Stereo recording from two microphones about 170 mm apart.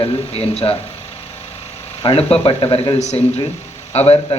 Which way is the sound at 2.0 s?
35° left (ahead or behind).